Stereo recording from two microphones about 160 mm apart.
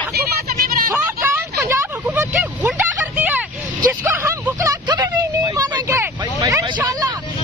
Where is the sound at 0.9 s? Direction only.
15° right (ahead or behind).